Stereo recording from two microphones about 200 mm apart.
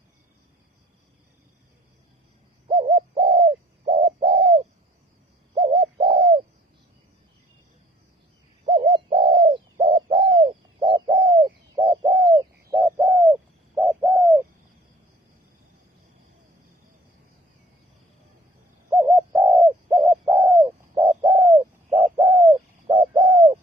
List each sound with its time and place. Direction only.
2.6 s bird: 25° right (ahead or behind)
8.6 s bird: 25° right (ahead or behind)
11.1 s bird: 40° right (ahead or behind)
11.4 s bird: 25° right (ahead or behind)
18.9 s bird: 15° right (ahead or behind)
20.3 s bird: 25° right (ahead or behind)
20.7 s bird: 15° right (ahead or behind)
21.2 s bird: 30° right (ahead or behind)